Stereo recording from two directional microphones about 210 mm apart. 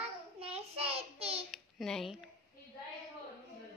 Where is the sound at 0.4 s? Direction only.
30° right (ahead or behind).